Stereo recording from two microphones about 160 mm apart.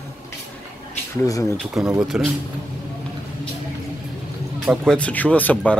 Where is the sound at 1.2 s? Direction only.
20° left (ahead or behind).